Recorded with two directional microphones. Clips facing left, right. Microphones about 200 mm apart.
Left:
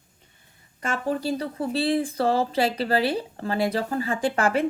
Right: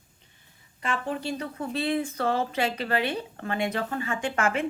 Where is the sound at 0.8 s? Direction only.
40° left (ahead or behind).